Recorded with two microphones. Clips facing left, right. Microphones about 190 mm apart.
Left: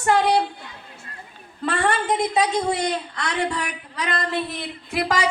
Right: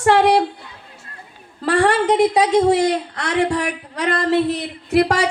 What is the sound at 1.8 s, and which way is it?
A woman's voice, 85° right.